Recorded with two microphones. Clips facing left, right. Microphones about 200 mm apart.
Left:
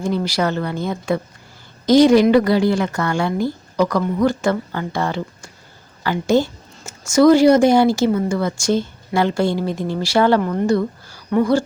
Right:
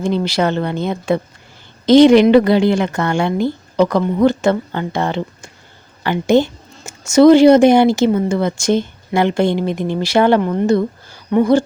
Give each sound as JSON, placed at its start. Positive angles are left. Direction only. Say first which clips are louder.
{"t": 0.0, "sound": "a woman's voice", "louder": "right 3 dB", "side_deg": -25}